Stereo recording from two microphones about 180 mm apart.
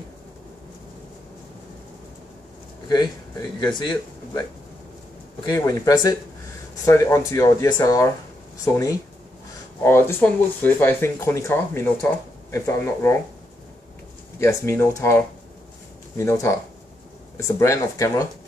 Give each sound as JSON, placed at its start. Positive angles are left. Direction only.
{"t": 2.9, "sound": "speech", "side_deg": 20}
{"t": 5.4, "sound": "speech", "side_deg": 20}
{"t": 14.4, "sound": "speech", "side_deg": 15}